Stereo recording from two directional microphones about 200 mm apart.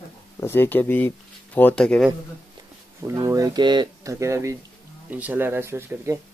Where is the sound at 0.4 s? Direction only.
10° left (ahead or behind).